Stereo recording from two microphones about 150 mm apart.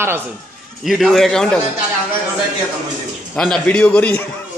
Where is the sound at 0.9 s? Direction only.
Centre (ahead or behind).